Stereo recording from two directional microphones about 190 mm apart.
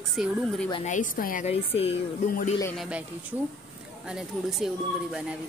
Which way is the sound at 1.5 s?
30° left (ahead or behind).